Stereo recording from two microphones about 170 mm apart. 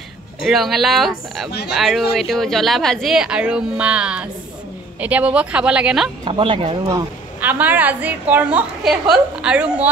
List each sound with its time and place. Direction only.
0.4 s a woman's voice: centre (ahead or behind)
6.2 s speech: 30° right (ahead or behind)
7.3 s a woman's voice: 10° right (ahead or behind)